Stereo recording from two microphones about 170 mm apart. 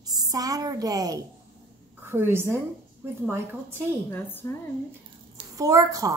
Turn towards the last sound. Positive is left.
turn(degrees=-20)  # may be behind; listen again after turning